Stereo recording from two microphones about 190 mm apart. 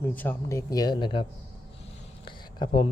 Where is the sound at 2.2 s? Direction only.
25° left (ahead or behind).